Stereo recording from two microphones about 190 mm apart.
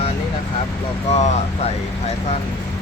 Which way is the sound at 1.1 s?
35° left (ahead or behind).